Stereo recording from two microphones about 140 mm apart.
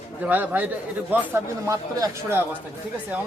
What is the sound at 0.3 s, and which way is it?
Speech, 10° right (ahead or behind).